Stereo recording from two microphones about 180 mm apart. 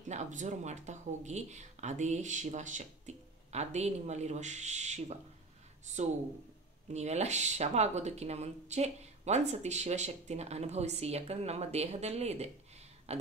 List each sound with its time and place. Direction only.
0.1 s speech: 40° right (ahead or behind)
6.9 s speech: 40° right (ahead or behind)